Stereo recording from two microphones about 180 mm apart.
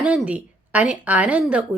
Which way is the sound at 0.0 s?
5° right (ahead or behind).